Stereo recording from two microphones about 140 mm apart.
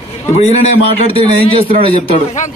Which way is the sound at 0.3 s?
50° left (ahead or behind).